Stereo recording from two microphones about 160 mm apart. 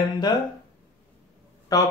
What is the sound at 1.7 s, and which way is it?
Speech, 25° left (ahead or behind).